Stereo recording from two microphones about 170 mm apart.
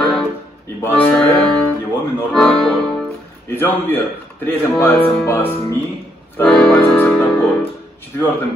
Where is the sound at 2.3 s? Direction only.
5° left (ahead or behind).